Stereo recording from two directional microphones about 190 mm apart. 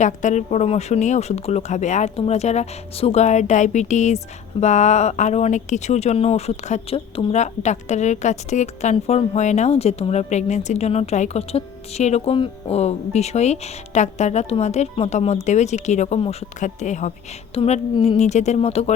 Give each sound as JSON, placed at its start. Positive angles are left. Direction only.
{"t": 0.0, "sound": "speech", "side_deg": 40}